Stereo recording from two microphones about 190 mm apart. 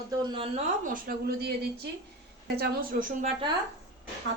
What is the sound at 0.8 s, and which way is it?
A woman's voice, 50° right (ahead or behind).